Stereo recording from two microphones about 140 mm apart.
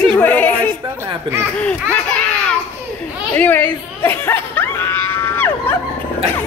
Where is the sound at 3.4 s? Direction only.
15° left (ahead or behind).